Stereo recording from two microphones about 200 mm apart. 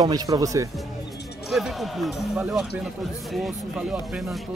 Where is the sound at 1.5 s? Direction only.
Centre (ahead or behind).